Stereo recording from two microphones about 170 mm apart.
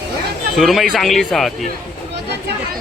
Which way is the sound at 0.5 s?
Centre (ahead or behind).